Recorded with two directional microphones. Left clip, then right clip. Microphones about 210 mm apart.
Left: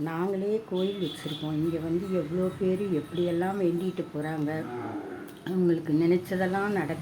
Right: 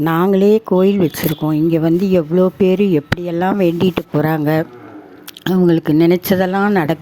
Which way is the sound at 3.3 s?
50° right (ahead or behind).